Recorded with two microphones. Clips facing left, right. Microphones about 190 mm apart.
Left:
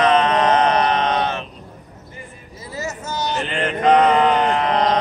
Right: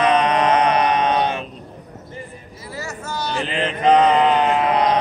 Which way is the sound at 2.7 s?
20° left (ahead or behind).